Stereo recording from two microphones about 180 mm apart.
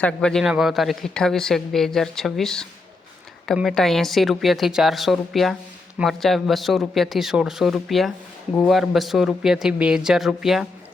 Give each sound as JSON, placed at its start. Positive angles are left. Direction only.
{"t": 0.0, "sound": "speech", "side_deg": 5}